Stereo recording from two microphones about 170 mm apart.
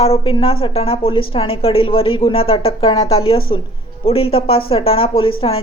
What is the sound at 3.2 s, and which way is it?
Speech, 30° left (ahead or behind).